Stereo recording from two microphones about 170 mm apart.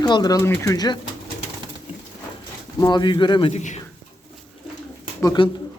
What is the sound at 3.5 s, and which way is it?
Speech, 45° left (ahead or behind).